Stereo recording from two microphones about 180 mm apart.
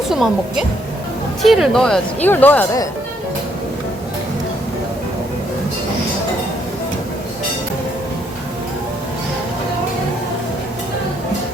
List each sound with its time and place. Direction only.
0.1 s speech: centre (ahead or behind)